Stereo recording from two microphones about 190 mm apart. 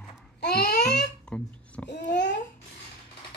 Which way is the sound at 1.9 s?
65° left (ahead or behind).